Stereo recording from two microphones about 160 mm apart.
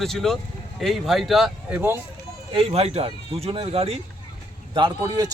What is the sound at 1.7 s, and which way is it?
Speech, 15° right (ahead or behind).